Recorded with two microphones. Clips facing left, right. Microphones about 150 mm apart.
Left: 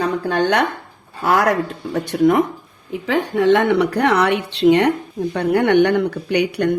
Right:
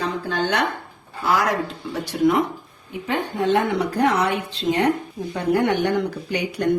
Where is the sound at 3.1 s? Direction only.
90° left.